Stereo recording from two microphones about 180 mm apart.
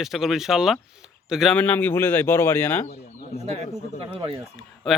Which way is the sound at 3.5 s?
35° right (ahead or behind).